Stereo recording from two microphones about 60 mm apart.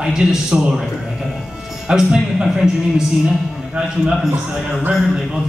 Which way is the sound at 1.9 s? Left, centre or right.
Centre.